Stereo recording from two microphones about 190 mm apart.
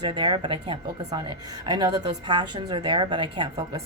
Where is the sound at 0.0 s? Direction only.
25° right (ahead or behind).